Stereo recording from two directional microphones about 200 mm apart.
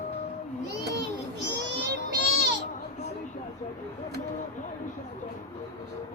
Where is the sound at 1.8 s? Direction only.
55° right (ahead or behind).